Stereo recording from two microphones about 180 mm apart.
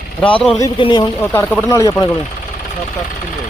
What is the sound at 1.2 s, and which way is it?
Speech, 15° left (ahead or behind).